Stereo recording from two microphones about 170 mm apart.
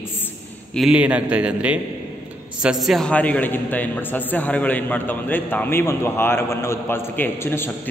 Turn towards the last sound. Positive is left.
turn(degrees=15)  # may be behind; listen again after turning